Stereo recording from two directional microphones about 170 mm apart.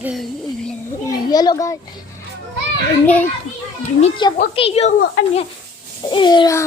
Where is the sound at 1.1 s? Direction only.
25° left (ahead or behind).